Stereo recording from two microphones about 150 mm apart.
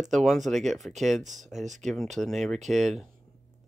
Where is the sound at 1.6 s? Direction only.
55° right (ahead or behind).